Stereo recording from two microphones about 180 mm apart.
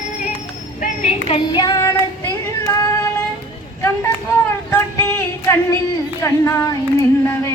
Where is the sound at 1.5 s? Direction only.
20° left (ahead or behind).